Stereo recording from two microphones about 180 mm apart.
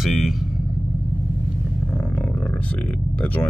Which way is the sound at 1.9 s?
5° left (ahead or behind).